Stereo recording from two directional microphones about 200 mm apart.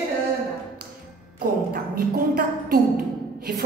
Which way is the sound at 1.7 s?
50° right (ahead or behind).